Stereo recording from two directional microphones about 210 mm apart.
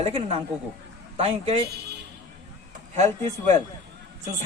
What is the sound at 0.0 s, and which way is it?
A man's voice, 30° right (ahead or behind).